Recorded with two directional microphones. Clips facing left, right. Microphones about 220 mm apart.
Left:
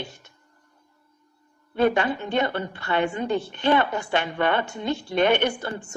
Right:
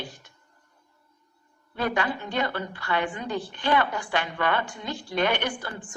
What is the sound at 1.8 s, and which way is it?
A woman's voice, 25° left (ahead or behind).